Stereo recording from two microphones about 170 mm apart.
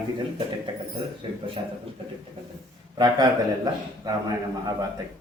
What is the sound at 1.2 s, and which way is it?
Speech, 30° right (ahead or behind).